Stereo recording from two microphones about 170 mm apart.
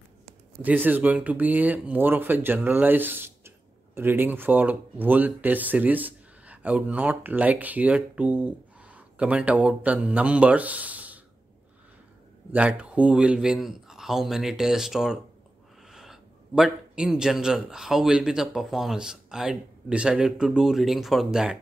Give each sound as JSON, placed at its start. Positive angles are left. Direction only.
{"t": 0.6, "sound": "speech", "side_deg": -10}
{"t": 12.5, "sound": "a man's voice", "side_deg": -5}